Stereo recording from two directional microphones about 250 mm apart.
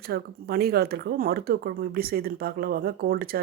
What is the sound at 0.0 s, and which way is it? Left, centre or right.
Speech, right.